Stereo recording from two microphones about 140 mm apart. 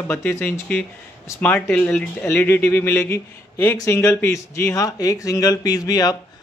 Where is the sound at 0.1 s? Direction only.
15° left (ahead or behind).